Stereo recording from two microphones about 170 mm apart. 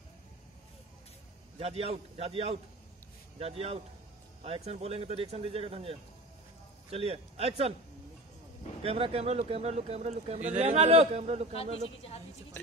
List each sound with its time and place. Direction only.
1.6 s speech: 35° right (ahead or behind)
8.8 s speech: 35° right (ahead or behind)
11.5 s a man's voice: 35° left (ahead or behind)